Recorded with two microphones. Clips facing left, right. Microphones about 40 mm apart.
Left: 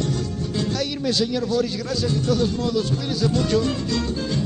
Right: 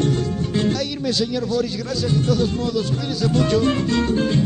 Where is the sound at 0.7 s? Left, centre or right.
Centre.